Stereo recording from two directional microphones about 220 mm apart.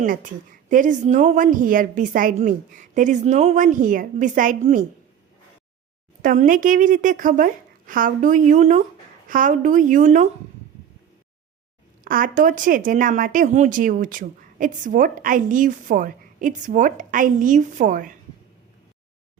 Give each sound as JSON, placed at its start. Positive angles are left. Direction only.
{"t": 0.0, "sound": "speech", "side_deg": -35}
{"t": 6.2, "sound": "speech", "side_deg": -35}
{"t": 12.0, "sound": "speech", "side_deg": -40}